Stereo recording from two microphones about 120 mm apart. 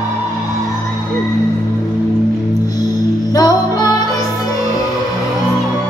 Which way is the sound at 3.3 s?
30° left (ahead or behind).